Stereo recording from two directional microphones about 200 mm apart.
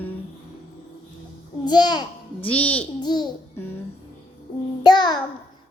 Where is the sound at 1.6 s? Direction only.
20° left (ahead or behind).